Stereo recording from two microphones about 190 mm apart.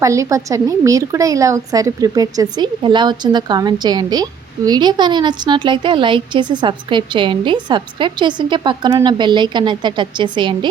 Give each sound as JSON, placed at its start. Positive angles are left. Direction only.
{"t": 0.0, "sound": "a woman's voice", "side_deg": -15}